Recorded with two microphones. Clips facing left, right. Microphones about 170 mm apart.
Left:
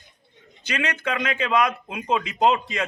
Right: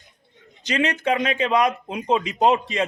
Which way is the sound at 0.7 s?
25° right (ahead or behind).